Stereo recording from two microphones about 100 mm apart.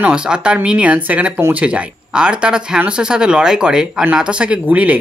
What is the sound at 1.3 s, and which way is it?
Speech, 25° right (ahead or behind).